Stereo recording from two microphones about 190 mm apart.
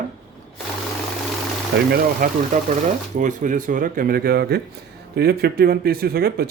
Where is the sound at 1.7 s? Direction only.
55° right (ahead or behind).